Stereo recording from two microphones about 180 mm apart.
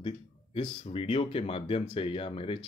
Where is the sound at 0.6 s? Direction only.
30° left (ahead or behind).